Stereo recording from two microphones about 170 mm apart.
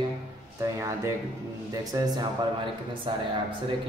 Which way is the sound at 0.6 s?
15° right (ahead or behind).